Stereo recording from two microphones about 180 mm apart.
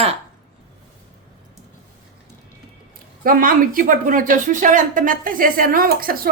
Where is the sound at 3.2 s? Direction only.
50° right (ahead or behind).